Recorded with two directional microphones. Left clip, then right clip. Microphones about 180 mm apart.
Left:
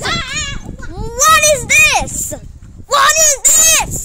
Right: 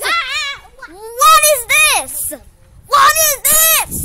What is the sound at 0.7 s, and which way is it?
Baby cry, 5° right (ahead or behind).